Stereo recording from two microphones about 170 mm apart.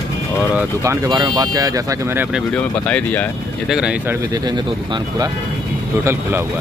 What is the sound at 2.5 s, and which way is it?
Speech, 5° left (ahead or behind).